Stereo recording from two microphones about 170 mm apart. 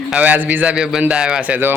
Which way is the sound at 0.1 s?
10° right (ahead or behind).